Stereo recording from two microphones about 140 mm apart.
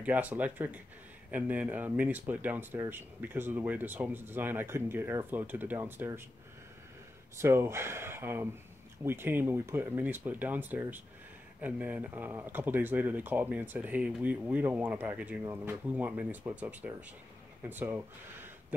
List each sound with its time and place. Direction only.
0.0 s speech: 10° right (ahead or behind)
7.3 s speech: 15° right (ahead or behind)